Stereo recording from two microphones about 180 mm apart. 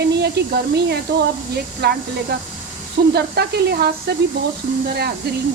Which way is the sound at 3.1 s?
65° right (ahead or behind).